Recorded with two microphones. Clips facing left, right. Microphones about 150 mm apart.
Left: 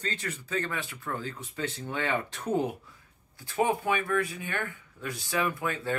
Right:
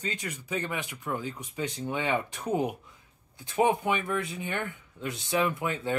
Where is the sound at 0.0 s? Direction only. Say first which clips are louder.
Even; 15° right (ahead or behind).